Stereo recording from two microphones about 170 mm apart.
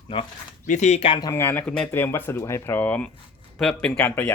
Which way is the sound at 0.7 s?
45° left (ahead or behind).